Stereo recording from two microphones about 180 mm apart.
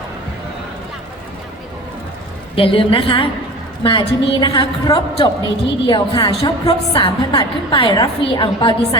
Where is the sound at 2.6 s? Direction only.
30° left (ahead or behind).